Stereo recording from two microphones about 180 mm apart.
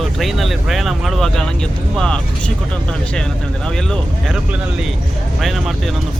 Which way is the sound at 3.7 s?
Centre (ahead or behind).